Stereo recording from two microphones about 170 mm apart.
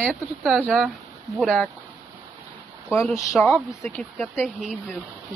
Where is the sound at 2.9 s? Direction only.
15° left (ahead or behind).